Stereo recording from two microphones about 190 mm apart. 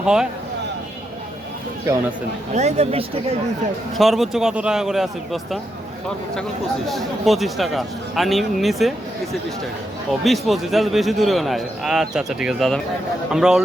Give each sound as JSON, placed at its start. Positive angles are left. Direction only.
{"t": 0.0, "sound": "speech", "side_deg": -5}
{"t": 2.5, "sound": "a woman's voice", "side_deg": -35}
{"t": 3.9, "sound": "a man's voice", "side_deg": 0}
{"t": 6.8, "sound": "a man's voice", "side_deg": 0}
{"t": 10.1, "sound": "a man's voice", "side_deg": 0}